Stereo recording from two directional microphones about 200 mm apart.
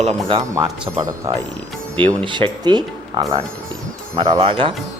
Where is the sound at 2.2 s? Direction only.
25° right (ahead or behind).